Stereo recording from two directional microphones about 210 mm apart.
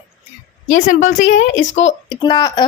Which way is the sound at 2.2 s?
20° left (ahead or behind).